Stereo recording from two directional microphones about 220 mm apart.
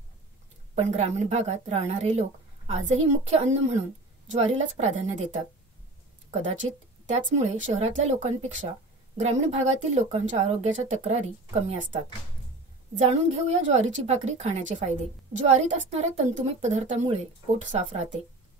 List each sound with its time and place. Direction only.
0.7 s a woman's voice: 30° right (ahead or behind)
7.1 s a woman's voice: 30° right (ahead or behind)